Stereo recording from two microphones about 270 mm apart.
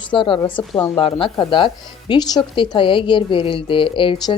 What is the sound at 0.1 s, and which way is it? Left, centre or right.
Speech, centre.